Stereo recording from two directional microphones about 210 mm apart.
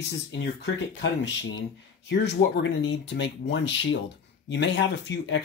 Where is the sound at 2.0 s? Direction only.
55° left (ahead or behind).